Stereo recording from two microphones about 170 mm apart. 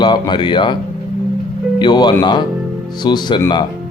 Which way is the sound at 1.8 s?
25° left (ahead or behind).